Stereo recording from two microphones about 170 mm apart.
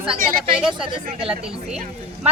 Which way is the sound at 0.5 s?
5° right (ahead or behind).